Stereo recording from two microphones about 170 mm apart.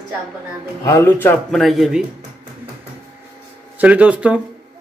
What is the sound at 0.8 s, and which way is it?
Speech, 15° left (ahead or behind).